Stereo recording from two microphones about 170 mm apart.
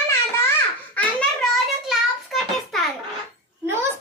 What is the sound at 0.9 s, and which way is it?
Child singing, 5° left (ahead or behind).